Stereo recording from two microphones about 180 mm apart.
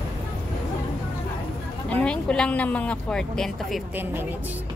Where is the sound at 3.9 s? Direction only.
10° right (ahead or behind).